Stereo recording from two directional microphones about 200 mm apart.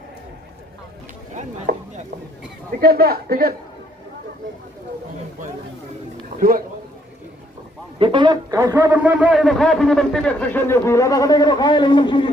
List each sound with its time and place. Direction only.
1.7 s a sound: 50° right (ahead or behind)
2.8 s a man's voice: 50° right (ahead or behind)
6.3 s speech: 45° right (ahead or behind)
7.9 s a man's voice: 25° right (ahead or behind); by 12.3 s 25° left (ahead or behind)